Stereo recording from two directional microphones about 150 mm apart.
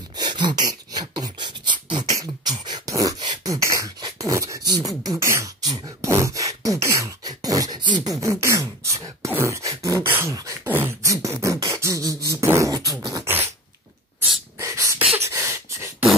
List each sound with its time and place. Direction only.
0.1 s beatboxing: 30° right (ahead or behind)
14.6 s beatboxing: 20° right (ahead or behind)
15.1 s a sound: 20° right (ahead or behind)